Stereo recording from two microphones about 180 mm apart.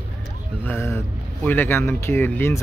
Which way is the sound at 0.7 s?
15° left (ahead or behind).